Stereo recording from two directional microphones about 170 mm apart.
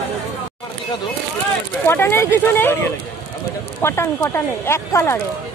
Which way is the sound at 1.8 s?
15° left (ahead or behind).